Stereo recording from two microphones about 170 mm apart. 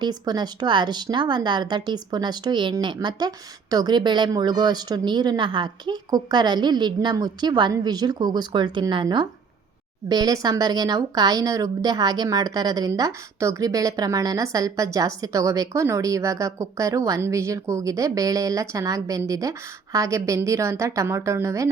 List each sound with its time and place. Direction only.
0.0 s a woman's voice: 25° right (ahead or behind)